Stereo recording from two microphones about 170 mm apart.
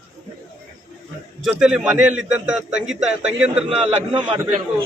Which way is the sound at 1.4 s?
5° right (ahead or behind).